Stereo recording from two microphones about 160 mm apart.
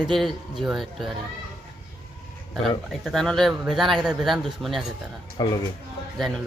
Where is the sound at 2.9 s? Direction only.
Centre (ahead or behind).